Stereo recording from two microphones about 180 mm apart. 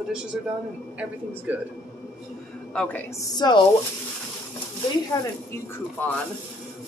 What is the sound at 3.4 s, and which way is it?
Speech, 20° left (ahead or behind).